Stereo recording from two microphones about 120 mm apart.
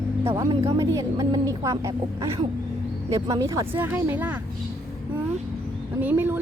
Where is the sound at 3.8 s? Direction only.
15° right (ahead or behind).